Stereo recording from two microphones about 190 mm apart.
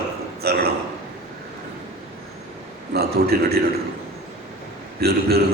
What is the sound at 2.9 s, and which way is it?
Speech, 55° right (ahead or behind).